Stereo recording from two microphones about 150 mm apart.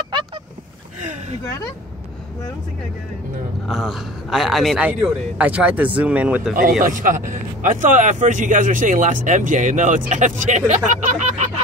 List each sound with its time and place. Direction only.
3.6 s a man's voice: centre (ahead or behind)
6.8 s speech: 60° right (ahead or behind)